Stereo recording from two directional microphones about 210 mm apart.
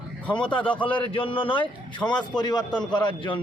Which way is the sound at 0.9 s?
25° left (ahead or behind).